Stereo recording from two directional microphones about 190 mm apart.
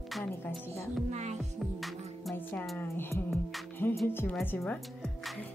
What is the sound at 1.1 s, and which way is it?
Music, 40° right (ahead or behind).